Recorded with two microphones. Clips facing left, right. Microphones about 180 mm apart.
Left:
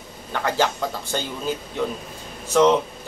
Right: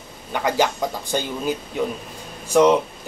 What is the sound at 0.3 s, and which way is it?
Speech, 15° right (ahead or behind).